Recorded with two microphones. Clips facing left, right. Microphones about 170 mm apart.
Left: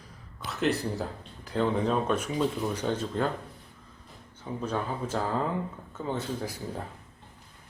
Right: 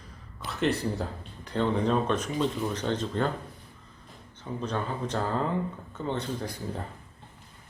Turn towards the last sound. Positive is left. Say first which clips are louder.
# even
turn(degrees=5)  # may be behind; listen again after turning